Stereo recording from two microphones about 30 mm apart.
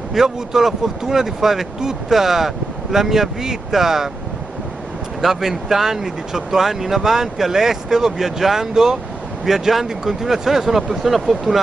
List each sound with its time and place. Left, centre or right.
0.1 s speech: centre
5.2 s speech: centre